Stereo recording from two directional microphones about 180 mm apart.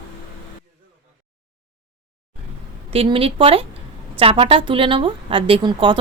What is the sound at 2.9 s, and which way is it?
Speech, 30° right (ahead or behind).